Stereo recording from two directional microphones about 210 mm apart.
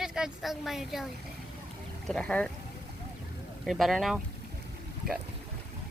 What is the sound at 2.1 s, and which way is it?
Speech, 5° left (ahead or behind).